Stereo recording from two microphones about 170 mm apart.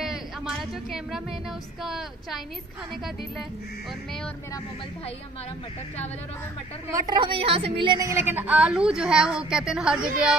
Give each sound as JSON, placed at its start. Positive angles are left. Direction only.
{"t": 0.0, "sound": "a sound", "side_deg": 0}
{"t": 1.8, "sound": "a woman's voice", "side_deg": 0}
{"t": 6.9, "sound": "a woman's voice", "side_deg": -20}
{"t": 8.1, "sound": "a woman's voice", "side_deg": -15}